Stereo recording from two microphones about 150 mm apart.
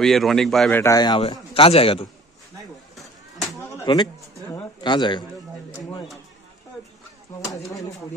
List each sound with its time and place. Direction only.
0.0 s a man's voice: centre (ahead or behind)
0.7 s a man's voice: 25° left (ahead or behind); by 2.0 s 40° left (ahead or behind)
3.7 s a sound: 30° left (ahead or behind)
4.8 s a man's voice: 30° left (ahead or behind)
7.4 s speech: 20° left (ahead or behind)